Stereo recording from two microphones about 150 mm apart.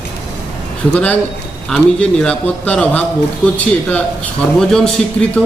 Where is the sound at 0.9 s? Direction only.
10° left (ahead or behind).